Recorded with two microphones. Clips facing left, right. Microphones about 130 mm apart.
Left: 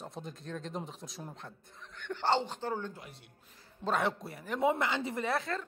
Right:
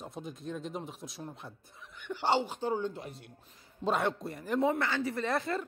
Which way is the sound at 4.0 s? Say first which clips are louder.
Right 1 dB; centre (ahead or behind).